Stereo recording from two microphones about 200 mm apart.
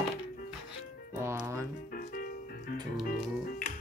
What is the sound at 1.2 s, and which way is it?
Music, 10° right (ahead or behind).